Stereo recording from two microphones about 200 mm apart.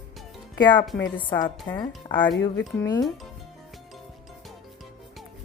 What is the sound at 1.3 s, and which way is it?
A woman's voice, 25° left (ahead or behind).